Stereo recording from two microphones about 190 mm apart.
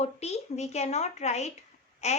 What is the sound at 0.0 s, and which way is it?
A woman's voice, 35° left (ahead or behind).